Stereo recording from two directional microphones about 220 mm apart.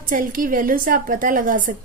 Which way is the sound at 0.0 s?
40° right (ahead or behind).